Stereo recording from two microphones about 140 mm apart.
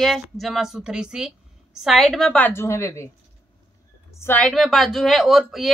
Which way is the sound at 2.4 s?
20° left (ahead or behind).